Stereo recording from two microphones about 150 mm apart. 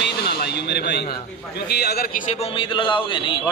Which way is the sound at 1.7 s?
90° left.